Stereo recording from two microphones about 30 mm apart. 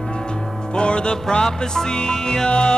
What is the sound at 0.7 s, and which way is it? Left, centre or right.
Music, left.